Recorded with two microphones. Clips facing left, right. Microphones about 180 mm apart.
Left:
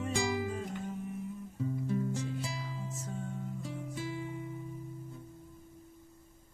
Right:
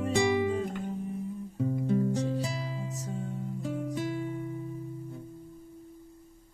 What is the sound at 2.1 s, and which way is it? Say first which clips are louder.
Music: right 7 dB; 35° right (ahead or behind).